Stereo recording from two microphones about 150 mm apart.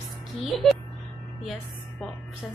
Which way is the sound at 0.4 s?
Centre (ahead or behind).